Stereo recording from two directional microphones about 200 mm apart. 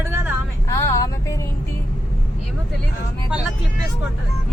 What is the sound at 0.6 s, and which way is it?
Speech, 15° left (ahead or behind).